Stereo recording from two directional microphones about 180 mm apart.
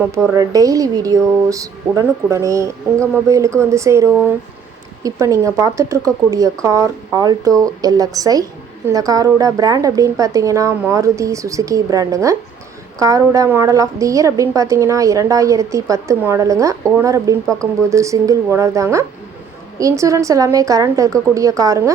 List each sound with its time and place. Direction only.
0.3 s a woman's voice: 20° right (ahead or behind)